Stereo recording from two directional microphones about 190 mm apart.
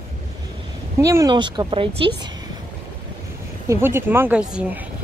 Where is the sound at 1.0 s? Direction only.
20° right (ahead or behind).